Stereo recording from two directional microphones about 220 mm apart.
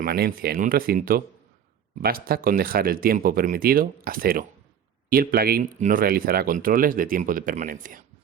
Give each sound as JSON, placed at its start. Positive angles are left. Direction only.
{"t": 0.0, "sound": "speech", "side_deg": -40}